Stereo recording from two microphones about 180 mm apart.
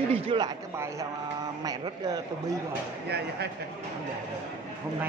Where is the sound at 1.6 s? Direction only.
20° right (ahead or behind).